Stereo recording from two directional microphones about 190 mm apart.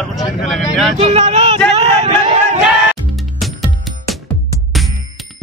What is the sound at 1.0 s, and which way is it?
Speech, 35° right (ahead or behind).